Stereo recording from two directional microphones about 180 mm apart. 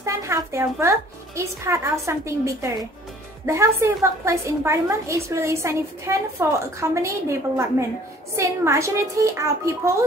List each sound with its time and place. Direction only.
0.0 s speech: 15° right (ahead or behind)